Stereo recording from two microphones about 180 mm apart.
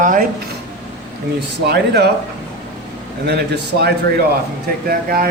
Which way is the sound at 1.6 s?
65° right (ahead or behind).